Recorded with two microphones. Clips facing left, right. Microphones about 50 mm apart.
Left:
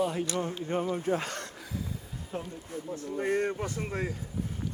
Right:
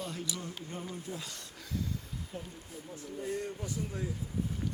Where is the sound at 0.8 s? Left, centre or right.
Left.